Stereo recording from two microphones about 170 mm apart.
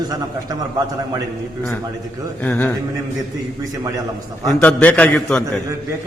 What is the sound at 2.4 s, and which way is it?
Speech, 10° left (ahead or behind).